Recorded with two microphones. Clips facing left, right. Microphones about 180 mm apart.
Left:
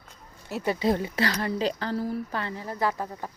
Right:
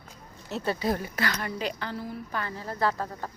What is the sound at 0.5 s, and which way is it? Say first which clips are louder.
A woman's voice: left 3 dB; 15° left (ahead or behind).